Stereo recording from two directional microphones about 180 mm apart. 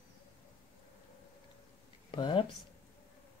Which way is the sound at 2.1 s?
25° left (ahead or behind).